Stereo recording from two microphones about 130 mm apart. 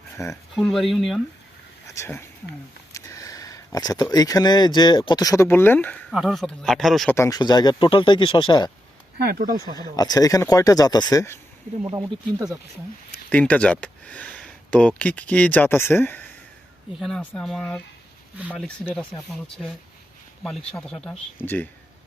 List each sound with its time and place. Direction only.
0.2 s speech: 25° left (ahead or behind)
0.5 s a man's voice: centre (ahead or behind)
1.9 s speech: 20° left (ahead or behind)
2.9 s sniff: 25° left (ahead or behind)
4.1 s speech: 30° left (ahead or behind); by 6.0 s 15° left (ahead or behind)
6.1 s a man's voice: centre (ahead or behind)
7.1 s speech: 25° left (ahead or behind)
9.7 s speech: 30° left (ahead or behind)
11.9 s speech: 25° right (ahead or behind)
13.3 s speech: 10° left (ahead or behind)
19.3 s a man's voice: 5° left (ahead or behind)